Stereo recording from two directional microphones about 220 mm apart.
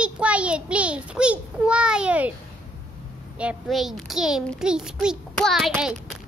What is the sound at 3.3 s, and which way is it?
A child's voice, 5° right (ahead or behind).